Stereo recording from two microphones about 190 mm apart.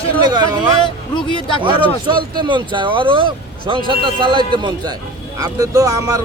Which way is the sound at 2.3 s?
25° right (ahead or behind).